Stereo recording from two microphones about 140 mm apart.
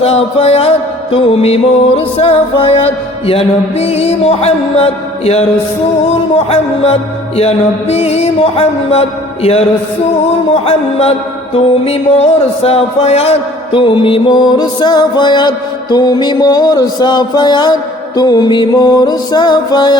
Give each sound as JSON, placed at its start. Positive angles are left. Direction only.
{"t": 0.0, "sound": "music", "side_deg": 45}
{"t": 6.5, "sound": "music", "side_deg": 45}
{"t": 10.5, "sound": "mantra", "side_deg": 45}